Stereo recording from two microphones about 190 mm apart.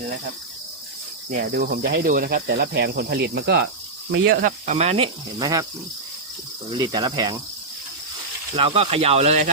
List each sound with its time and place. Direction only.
1.3 s cricket: 45° right (ahead or behind)
4.1 s speech: 55° right (ahead or behind)
4.6 s speech: 35° right (ahead or behind)
5.4 s speech: 20° right (ahead or behind)
6.7 s speech: 20° right (ahead or behind)
8.5 s speech: 30° right (ahead or behind)